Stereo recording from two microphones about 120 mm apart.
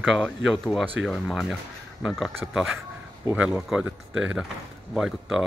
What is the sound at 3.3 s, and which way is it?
Speech, 10° right (ahead or behind).